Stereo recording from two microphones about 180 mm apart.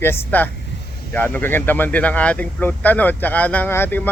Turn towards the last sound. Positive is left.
turn(degrees=10)  # may be behind; listen again after turning